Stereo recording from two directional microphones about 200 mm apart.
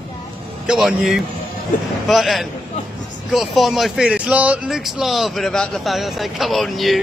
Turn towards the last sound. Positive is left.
turn(degrees=0)  # may be behind; listen again after turning